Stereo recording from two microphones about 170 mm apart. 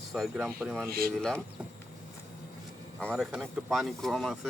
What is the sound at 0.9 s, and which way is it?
Speech, 65° right (ahead or behind).